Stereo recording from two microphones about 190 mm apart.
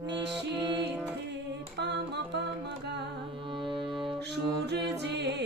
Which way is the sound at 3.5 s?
25° right (ahead or behind).